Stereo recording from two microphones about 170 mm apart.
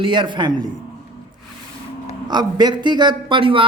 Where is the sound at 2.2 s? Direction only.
25° right (ahead or behind).